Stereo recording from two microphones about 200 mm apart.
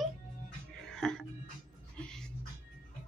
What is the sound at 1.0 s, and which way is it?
Music, centre (ahead or behind).